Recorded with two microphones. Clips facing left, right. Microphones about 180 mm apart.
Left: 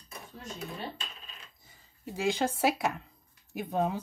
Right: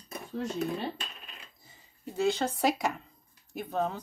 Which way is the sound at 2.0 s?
10° left (ahead or behind).